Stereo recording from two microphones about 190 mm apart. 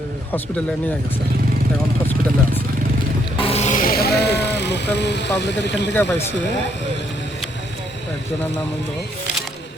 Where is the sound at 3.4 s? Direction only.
30° left (ahead or behind); by 5.9 s 65° left (ahead or behind).